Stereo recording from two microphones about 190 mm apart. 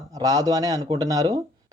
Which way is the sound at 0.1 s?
20° right (ahead or behind).